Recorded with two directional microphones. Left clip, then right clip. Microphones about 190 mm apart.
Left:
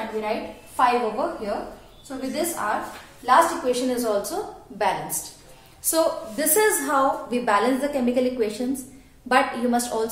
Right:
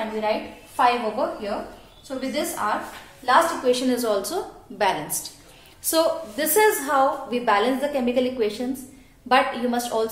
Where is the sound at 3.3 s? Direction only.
35° right (ahead or behind).